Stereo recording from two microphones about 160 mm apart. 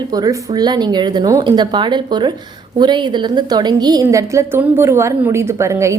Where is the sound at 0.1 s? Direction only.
20° right (ahead or behind).